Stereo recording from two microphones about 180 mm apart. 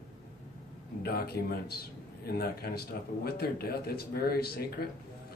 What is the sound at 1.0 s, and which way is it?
A man's voice, 60° left (ahead or behind).